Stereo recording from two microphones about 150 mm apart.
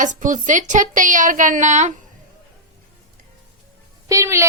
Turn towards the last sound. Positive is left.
turn(degrees=-20)  # may be behind; listen again after turning